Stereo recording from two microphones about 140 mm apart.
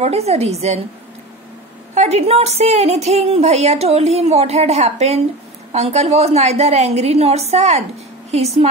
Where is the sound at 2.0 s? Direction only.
50° right (ahead or behind).